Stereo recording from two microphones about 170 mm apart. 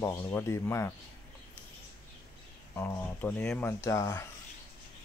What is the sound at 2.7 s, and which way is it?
Speech, 15° left (ahead or behind).